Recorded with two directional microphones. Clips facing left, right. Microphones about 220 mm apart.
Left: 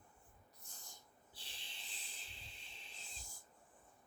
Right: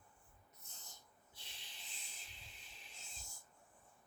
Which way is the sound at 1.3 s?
30° left (ahead or behind).